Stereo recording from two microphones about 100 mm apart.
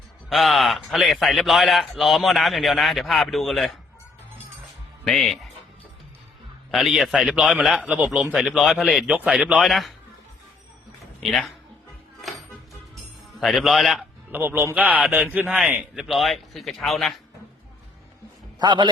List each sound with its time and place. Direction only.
0.3 s a man's voice: centre (ahead or behind)
5.0 s a man's voice: centre (ahead or behind)
6.7 s a man's voice: centre (ahead or behind)
7.8 s speech: 15° right (ahead or behind)
8.5 s a man's voice: centre (ahead or behind)
9.6 s a man's voice: centre (ahead or behind)
11.2 s a man's voice: centre (ahead or behind)
13.4 s a man's voice: centre (ahead or behind)
14.3 s a man's voice: 20° right (ahead or behind); by 17.2 s centre (ahead or behind)
18.6 s a man's voice: 50° right (ahead or behind)